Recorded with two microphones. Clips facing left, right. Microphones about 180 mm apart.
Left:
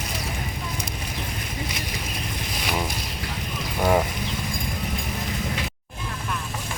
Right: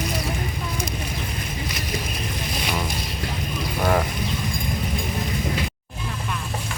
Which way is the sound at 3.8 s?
10° left (ahead or behind).